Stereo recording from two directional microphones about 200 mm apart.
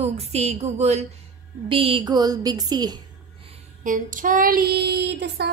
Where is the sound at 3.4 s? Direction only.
40° right (ahead or behind).